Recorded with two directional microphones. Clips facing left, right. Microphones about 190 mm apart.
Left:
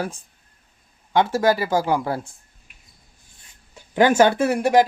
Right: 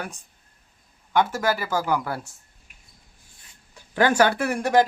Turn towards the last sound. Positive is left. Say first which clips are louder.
# left 3 dB
turn(degrees=15)  # may be behind; listen again after turning